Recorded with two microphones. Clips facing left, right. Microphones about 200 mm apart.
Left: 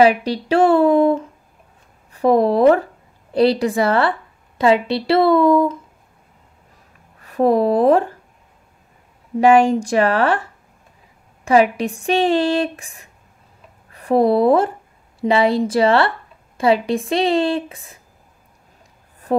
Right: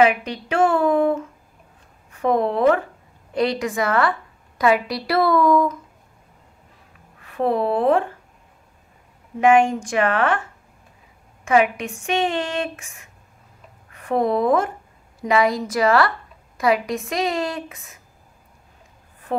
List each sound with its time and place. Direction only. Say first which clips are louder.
0.0 s a woman's voice: left 4 dB; 35° left (ahead or behind)
7.2 s a woman's voice: left 5 dB; 40° left (ahead or behind)
9.4 s a woman's voice: left 3 dB; 35° left (ahead or behind)